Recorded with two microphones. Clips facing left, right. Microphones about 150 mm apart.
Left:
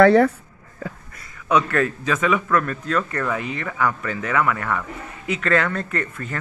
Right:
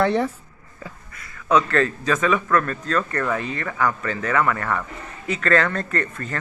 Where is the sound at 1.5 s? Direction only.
10° left (ahead or behind).